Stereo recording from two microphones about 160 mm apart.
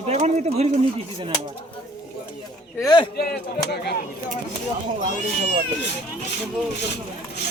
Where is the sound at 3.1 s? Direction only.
80° left.